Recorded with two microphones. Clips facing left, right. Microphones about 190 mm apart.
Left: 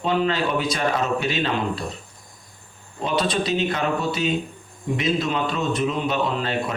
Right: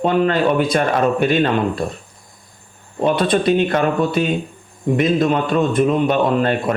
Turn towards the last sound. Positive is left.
turn(degrees=-55)  # may be behind; listen again after turning